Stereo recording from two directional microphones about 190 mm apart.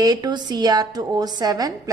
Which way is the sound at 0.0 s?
20° right (ahead or behind).